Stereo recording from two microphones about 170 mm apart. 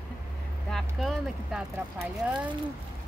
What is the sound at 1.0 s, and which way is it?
Speech, centre (ahead or behind).